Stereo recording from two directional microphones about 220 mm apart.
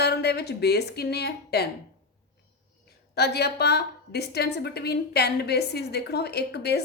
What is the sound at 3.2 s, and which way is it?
A woman's voice, 50° left (ahead or behind).